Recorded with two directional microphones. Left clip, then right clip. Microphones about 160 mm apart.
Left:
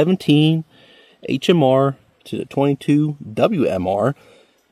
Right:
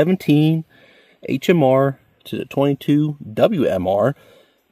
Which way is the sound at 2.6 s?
15° right (ahead or behind).